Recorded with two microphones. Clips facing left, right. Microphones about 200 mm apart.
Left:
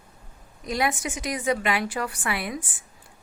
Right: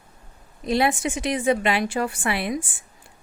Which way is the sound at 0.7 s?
30° right (ahead or behind).